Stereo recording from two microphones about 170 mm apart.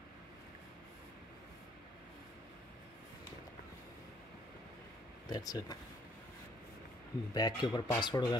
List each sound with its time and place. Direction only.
5.3 s speech: 20° left (ahead or behind)
7.3 s speech: 25° left (ahead or behind)